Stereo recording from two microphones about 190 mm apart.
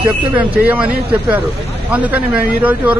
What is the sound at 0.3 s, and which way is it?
Speech, 5° right (ahead or behind).